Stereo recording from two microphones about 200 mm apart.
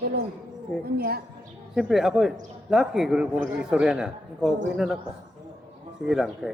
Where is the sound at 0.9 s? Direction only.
50° right (ahead or behind).